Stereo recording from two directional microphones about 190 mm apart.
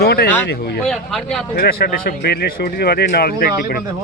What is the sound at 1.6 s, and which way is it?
Speech, 55° left (ahead or behind).